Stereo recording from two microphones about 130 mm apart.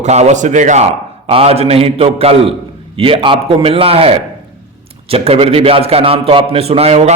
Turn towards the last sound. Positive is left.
turn(degrees=-55)  # may be behind; listen again after turning